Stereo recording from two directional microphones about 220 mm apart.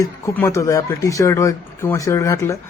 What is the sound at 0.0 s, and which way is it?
A man's voice, 15° left (ahead or behind).